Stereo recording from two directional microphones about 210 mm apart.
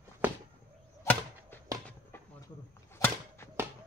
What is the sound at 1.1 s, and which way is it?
Chop, 10° left (ahead or behind).